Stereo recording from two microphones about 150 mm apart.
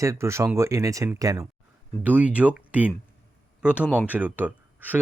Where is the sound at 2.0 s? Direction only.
10° right (ahead or behind).